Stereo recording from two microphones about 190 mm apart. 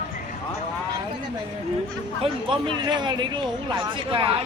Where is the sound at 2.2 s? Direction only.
25° right (ahead or behind).